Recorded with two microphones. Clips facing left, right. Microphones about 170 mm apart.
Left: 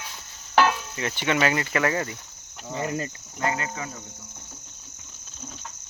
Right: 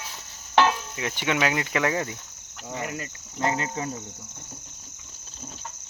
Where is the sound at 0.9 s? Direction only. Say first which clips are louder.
Left 1 dB; 5° right (ahead or behind).